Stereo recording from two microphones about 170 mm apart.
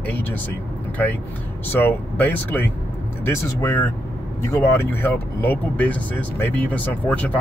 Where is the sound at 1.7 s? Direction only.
10° left (ahead or behind).